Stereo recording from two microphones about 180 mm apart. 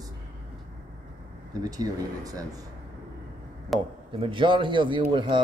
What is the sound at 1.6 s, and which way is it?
Speech, 20° right (ahead or behind).